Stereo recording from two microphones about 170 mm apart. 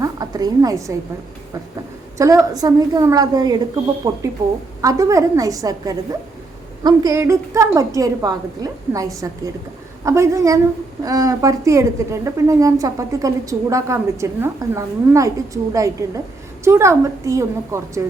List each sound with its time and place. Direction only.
0.0 s a woman's voice: 20° right (ahead or behind)
2.1 s a woman's voice: 20° right (ahead or behind)